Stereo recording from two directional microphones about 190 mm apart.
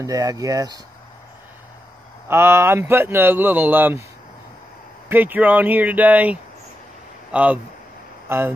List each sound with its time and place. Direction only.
0.0 s speech: 15° right (ahead or behind)
2.2 s speech: 15° right (ahead or behind)
5.1 s speech: 10° right (ahead or behind)